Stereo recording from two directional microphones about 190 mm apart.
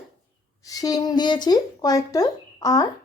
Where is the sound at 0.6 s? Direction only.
20° left (ahead or behind).